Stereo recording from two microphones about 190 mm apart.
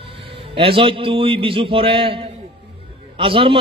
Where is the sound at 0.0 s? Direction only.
30° right (ahead or behind).